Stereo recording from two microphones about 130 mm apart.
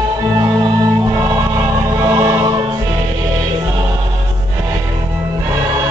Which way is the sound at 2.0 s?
25° right (ahead or behind).